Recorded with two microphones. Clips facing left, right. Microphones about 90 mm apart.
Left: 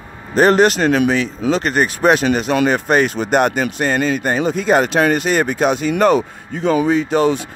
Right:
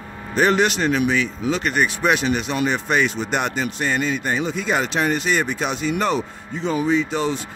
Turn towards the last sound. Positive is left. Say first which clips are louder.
# left 6 dB
turn(degrees=55)  # may be behind; listen again after turning